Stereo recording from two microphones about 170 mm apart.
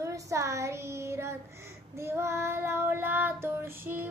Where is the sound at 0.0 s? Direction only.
20° right (ahead or behind).